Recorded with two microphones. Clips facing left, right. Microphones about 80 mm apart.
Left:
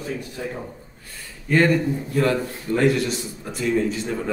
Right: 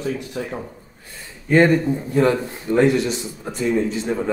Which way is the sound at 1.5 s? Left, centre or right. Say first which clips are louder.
Right 3 dB; right.